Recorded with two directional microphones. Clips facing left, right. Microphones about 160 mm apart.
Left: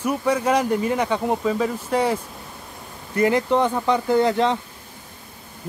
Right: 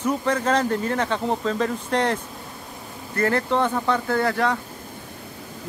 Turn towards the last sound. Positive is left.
turn(degrees=20)  # may be behind; listen again after turning